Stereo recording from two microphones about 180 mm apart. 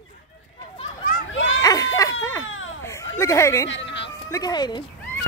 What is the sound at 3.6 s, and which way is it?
Cat, 85° left.